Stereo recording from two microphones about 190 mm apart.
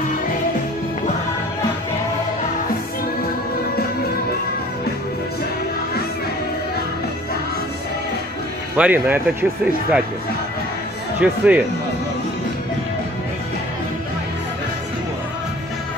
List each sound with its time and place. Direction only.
8.7 s speech: 10° right (ahead or behind)
11.1 s speech: 5° right (ahead or behind)